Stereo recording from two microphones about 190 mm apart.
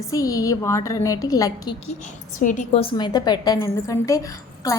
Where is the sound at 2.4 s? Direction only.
40° left (ahead or behind).